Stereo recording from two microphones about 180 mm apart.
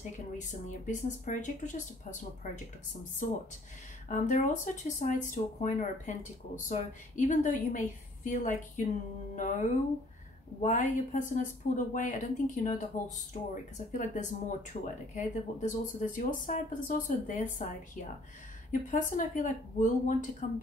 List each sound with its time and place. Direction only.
0.4 s speech: 45° left (ahead or behind)
13.9 s speech: 45° left (ahead or behind)